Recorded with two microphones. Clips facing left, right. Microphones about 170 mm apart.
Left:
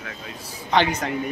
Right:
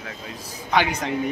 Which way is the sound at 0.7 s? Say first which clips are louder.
Left 1 dB; 10° right (ahead or behind).